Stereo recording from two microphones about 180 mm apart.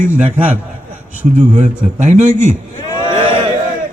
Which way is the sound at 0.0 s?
45° right (ahead or behind).